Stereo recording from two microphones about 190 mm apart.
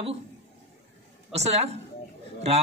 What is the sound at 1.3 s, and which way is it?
Speech, 35° right (ahead or behind).